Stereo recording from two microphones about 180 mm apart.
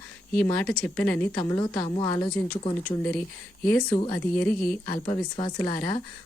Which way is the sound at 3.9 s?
30° left (ahead or behind).